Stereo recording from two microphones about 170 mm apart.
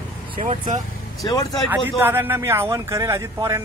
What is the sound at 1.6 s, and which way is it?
A man's voice, 10° right (ahead or behind).